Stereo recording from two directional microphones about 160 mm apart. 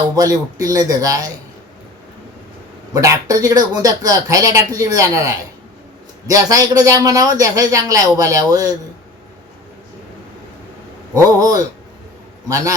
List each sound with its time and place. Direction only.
0.2 s speech: 20° right (ahead or behind)
2.9 s speech: 20° right (ahead or behind)
11.1 s speech: 20° right (ahead or behind)